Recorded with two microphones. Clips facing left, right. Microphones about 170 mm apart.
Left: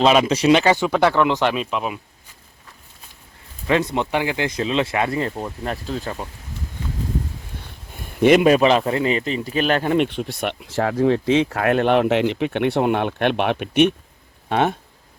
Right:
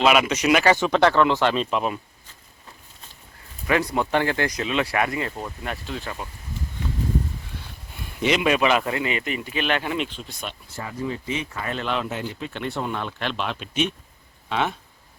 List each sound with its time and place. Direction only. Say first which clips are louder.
0.0 s speech: left 4 dB; 30° left (ahead or behind)
0.6 s speech: left 1 dB; 15° left (ahead or behind)
1.5 s speech: even; 5° left (ahead or behind)
3.7 s speech: left 2 dB; 25° left (ahead or behind)
4.4 s speech: left 3 dB; 30° left (ahead or behind)
5.6 s speech: left 6 dB; 40° left (ahead or behind)
8.2 s a man's voice: left 7 dB; 50° left (ahead or behind)